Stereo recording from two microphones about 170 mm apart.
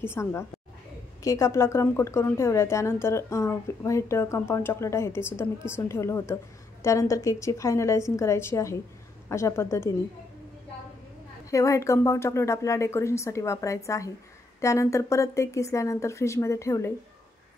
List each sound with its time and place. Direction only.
0.0 s a woman's voice: 15° left (ahead or behind)
11.5 s a woman's voice: 20° left (ahead or behind)